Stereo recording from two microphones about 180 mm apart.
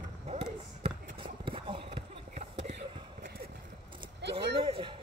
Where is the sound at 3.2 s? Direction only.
55° right (ahead or behind).